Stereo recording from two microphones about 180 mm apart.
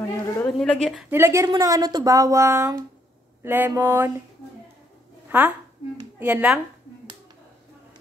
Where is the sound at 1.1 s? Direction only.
15° right (ahead or behind).